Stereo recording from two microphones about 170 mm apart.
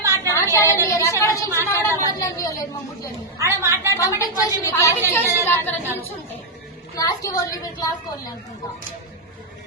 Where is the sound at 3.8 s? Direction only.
15° left (ahead or behind).